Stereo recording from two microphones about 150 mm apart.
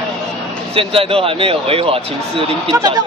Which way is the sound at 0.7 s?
40° right (ahead or behind).